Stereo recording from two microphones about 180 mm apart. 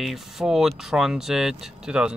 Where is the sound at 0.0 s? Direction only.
Centre (ahead or behind).